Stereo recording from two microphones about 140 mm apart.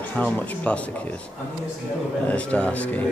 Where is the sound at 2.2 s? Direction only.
10° left (ahead or behind).